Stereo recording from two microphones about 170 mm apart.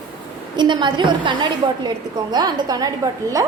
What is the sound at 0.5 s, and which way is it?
A woman's voice, 25° right (ahead or behind).